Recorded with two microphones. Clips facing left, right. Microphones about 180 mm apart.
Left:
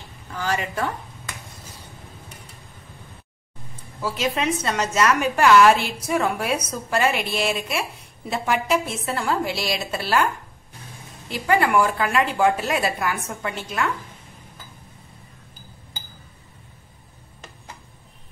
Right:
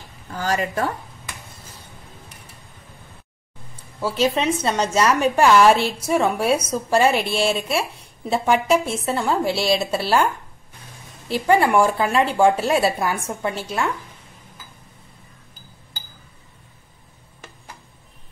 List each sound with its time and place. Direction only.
0.3 s a woman's voice: 45° right (ahead or behind)
4.0 s a woman's voice: 30° right (ahead or behind)
11.2 s a woman's voice: 30° right (ahead or behind)